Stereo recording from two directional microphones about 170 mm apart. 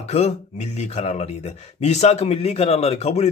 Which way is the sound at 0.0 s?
40° left (ahead or behind).